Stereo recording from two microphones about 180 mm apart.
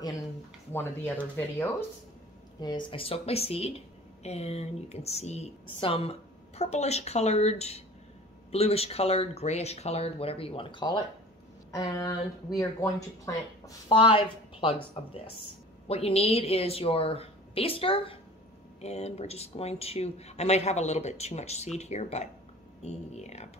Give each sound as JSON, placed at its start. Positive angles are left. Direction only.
{"t": 0.7, "sound": "speech", "side_deg": 10}
{"t": 2.6, "sound": "speech", "side_deg": 25}